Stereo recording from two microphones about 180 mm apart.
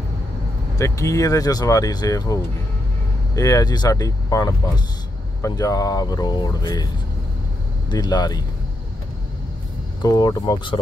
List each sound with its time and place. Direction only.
0.7 s speech: 15° left (ahead or behind)
7.9 s speech: 25° left (ahead or behind)
10.0 s speech: 20° left (ahead or behind)